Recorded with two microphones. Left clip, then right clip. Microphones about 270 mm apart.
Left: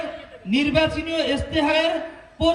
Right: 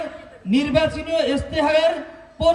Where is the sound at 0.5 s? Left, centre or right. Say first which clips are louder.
Right 1 dB; right.